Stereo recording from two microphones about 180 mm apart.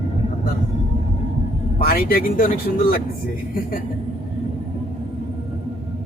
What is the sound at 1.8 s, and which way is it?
Speech, 55° left (ahead or behind).